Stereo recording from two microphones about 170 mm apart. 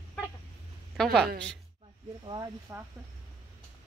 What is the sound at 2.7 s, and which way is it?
Speech, 15° right (ahead or behind).